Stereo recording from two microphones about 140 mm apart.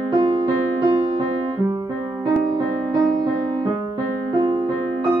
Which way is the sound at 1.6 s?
25° right (ahead or behind).